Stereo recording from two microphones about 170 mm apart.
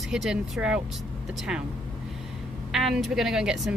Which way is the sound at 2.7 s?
Centre (ahead or behind).